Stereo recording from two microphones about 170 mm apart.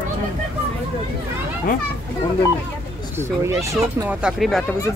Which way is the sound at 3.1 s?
15° right (ahead or behind).